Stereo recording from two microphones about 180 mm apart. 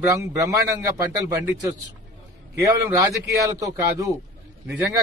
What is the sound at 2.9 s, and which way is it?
A man's voice, 20° right (ahead or behind).